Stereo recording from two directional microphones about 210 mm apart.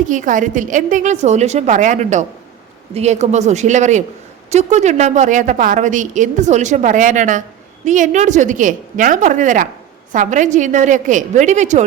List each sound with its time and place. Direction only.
0.0 s a woman's voice: 35° right (ahead or behind)